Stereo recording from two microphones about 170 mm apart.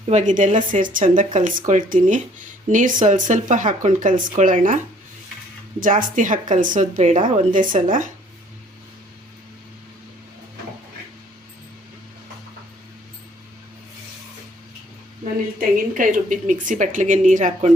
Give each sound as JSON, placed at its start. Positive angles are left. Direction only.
{"t": 0.1, "sound": "speech", "side_deg": -45}
{"t": 5.8, "sound": "speech", "side_deg": -50}
{"t": 15.7, "sound": "speech", "side_deg": -50}